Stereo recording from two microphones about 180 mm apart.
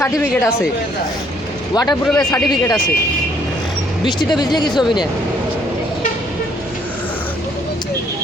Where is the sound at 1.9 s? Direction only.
5° left (ahead or behind).